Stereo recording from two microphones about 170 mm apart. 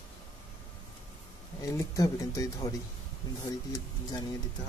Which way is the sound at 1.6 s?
20° left (ahead or behind).